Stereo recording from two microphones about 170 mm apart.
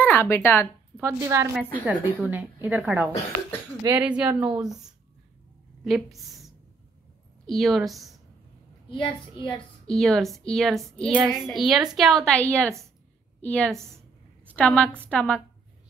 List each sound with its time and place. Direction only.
0.0 s speech: 10° left (ahead or behind)
1.0 s a woman's voice: 20° right (ahead or behind)
5.9 s a woman's voice: centre (ahead or behind)
8.8 s a child's voice: 30° left (ahead or behind)
9.8 s a woman's voice: centre (ahead or behind)